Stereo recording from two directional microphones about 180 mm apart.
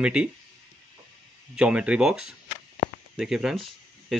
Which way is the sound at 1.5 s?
5° right (ahead or behind).